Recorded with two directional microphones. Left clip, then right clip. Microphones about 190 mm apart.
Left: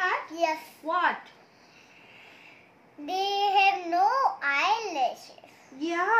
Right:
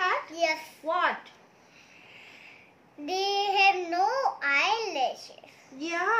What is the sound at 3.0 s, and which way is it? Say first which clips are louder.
Child singing: left 1 dB; 25° right (ahead or behind).